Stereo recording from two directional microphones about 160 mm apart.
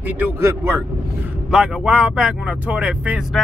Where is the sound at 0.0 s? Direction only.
10° right (ahead or behind).